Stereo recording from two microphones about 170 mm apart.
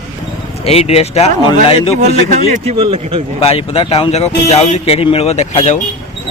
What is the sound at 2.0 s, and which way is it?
Speech, 45° right (ahead or behind).